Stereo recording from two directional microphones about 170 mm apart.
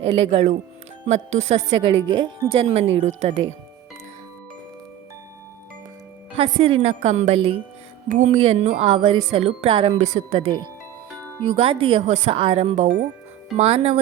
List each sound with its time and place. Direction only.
0.2 s a woman's voice: 35° right (ahead or behind)
1.9 s a woman's voice: 25° right (ahead or behind)
6.3 s a woman's voice: 30° right (ahead or behind)
8.1 s a woman's voice: 45° right (ahead or behind)